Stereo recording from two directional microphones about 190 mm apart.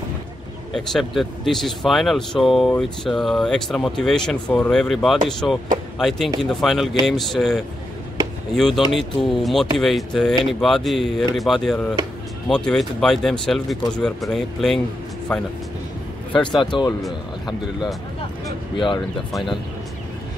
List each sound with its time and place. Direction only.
0.7 s speech: centre (ahead or behind)
16.7 s speech: 25° left (ahead or behind)
18.8 s speech: 25° left (ahead or behind)